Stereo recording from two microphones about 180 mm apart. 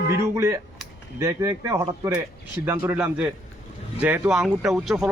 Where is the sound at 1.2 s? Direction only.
15° right (ahead or behind).